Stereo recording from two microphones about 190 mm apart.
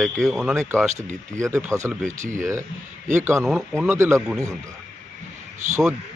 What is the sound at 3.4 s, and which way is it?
Speech, centre (ahead or behind).